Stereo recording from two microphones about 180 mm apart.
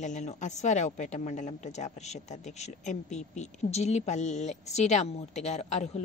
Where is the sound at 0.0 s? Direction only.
40° left (ahead or behind).